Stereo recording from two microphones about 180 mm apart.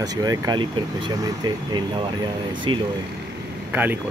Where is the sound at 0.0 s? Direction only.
20° right (ahead or behind).